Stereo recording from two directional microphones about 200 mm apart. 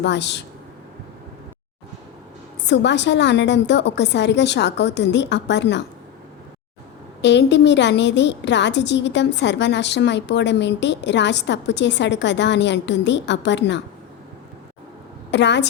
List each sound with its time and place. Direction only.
0.0 s a woman's voice: 60° left (ahead or behind)
2.6 s a woman's voice: 60° left (ahead or behind)
7.2 s a woman's voice: 60° left (ahead or behind)
15.3 s a woman's voice: 60° left (ahead or behind)